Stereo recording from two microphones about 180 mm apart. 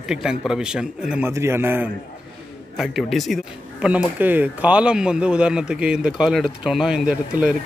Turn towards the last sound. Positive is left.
turn(degrees=-5)  # may be behind; listen again after turning